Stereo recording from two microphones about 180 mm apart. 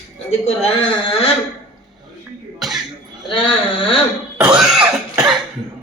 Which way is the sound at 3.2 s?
30° left (ahead or behind).